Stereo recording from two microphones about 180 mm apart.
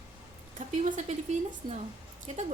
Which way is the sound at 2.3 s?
40° right (ahead or behind).